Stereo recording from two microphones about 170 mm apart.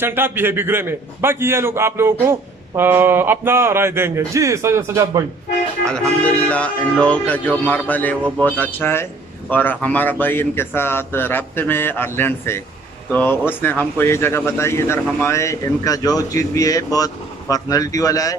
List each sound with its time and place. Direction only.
0.0 s a man's voice: 10° right (ahead or behind)
5.9 s speech: 5° left (ahead or behind)